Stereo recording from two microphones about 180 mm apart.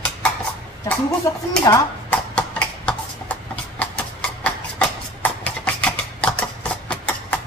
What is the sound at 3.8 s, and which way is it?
Clip-clop, 5° left (ahead or behind).